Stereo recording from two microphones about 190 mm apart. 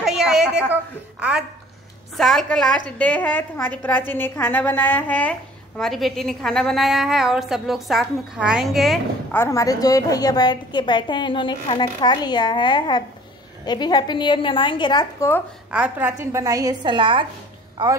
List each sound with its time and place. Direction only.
0.0 s a sound: centre (ahead or behind)
1.2 s a woman's voice: 5° right (ahead or behind)
9.3 s a woman's voice: 15° left (ahead or behind)
15.7 s a woman's voice: 5° right (ahead or behind); by 17.3 s 25° right (ahead or behind)